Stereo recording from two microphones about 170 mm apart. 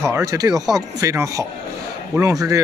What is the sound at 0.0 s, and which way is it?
Speech, 20° right (ahead or behind).